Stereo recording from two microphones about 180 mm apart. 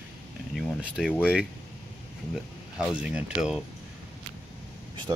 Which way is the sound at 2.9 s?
5° right (ahead or behind).